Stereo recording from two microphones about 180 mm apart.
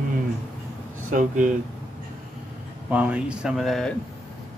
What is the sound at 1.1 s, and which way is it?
Speech, 45° right (ahead or behind).